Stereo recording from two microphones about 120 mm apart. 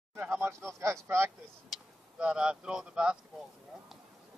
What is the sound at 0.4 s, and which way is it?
Speech, 25° right (ahead or behind).